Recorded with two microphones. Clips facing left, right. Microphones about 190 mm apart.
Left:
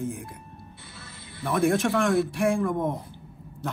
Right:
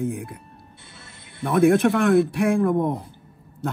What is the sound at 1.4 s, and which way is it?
A man's voice, 55° right (ahead or behind).